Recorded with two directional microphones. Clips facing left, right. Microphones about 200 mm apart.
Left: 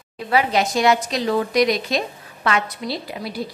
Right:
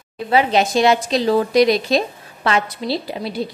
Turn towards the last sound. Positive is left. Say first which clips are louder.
# right 4 dB
turn(degrees=-25)  # may be behind; listen again after turning